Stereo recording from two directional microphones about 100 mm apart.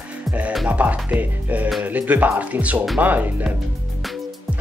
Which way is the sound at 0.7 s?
15° right (ahead or behind).